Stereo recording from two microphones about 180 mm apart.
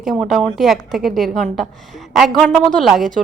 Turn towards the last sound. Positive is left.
turn(degrees=0)  # may be behind; listen again after turning